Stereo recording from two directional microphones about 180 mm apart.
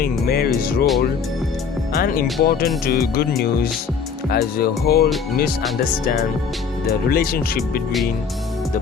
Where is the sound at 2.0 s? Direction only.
55° left (ahead or behind).